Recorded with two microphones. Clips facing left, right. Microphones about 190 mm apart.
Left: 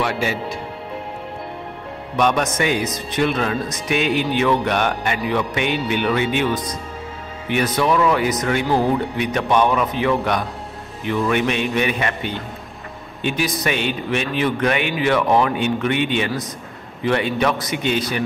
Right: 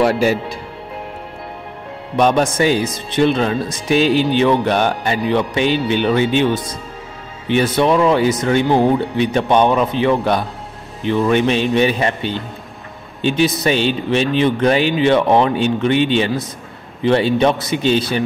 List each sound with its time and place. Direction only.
0.0 s a man's voice: 40° right (ahead or behind)
2.1 s a man's voice: 30° right (ahead or behind)